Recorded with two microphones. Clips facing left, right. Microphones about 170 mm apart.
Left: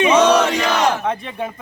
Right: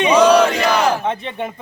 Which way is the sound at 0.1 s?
10° right (ahead or behind).